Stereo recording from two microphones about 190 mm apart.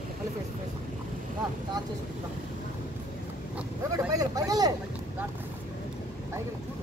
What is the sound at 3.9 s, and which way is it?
Speech, 20° right (ahead or behind).